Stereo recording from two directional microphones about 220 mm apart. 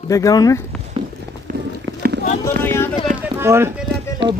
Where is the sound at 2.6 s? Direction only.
10° left (ahead or behind).